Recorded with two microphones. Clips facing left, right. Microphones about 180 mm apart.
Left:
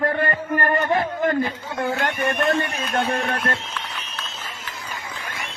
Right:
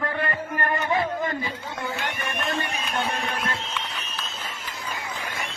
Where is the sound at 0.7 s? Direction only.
60° left (ahead or behind).